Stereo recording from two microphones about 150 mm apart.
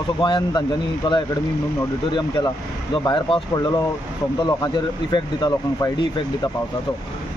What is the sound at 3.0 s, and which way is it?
Speech, 35° left (ahead or behind).